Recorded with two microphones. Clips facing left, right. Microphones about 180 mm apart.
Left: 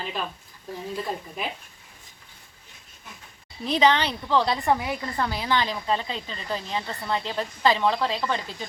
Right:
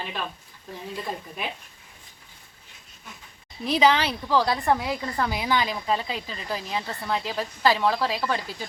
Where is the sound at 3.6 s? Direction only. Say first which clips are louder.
Even; 5° right (ahead or behind).